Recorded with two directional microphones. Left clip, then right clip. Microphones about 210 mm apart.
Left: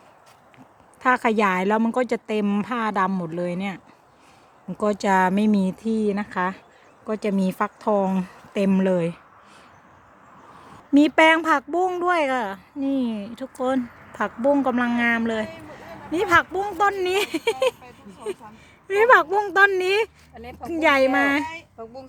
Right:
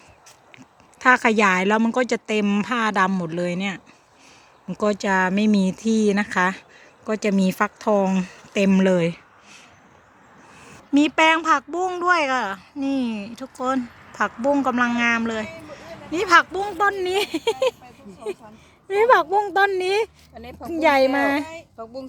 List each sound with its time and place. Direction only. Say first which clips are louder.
0.9 s speech: right 3 dB; centre (ahead or behind)
10.9 s speech: left 1 dB; 20° left (ahead or behind); by 17.7 s centre (ahead or behind)
18.9 s speech: left 1 dB; centre (ahead or behind)
20.3 s a woman's voice: even; 50° right (ahead or behind)
20.7 s speech: right 1 dB; centre (ahead or behind)
21.4 s speech: left 2 dB; 45° right (ahead or behind)